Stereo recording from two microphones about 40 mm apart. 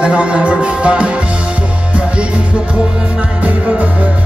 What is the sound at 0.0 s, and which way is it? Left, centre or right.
Music, right.